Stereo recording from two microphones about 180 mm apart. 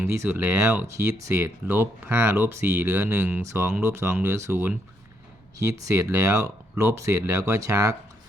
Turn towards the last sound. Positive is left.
turn(degrees=-20)  # may be behind; listen again after turning